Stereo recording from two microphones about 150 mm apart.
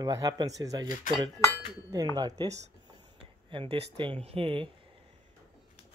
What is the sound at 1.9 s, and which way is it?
Speech, 25° right (ahead or behind).